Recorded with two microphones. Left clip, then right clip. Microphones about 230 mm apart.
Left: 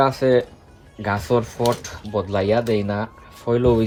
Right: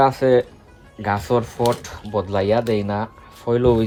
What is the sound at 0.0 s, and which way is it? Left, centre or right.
Speech, right.